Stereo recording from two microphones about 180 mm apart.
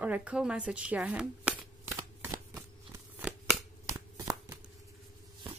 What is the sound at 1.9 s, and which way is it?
Shuffling cards, 20° right (ahead or behind).